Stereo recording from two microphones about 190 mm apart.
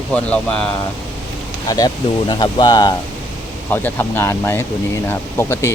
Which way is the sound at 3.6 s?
10° left (ahead or behind).